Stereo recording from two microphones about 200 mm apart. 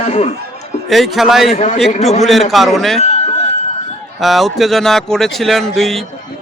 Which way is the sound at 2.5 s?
Centre (ahead or behind).